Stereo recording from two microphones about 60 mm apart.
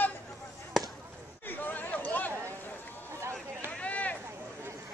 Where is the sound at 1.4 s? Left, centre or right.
Left.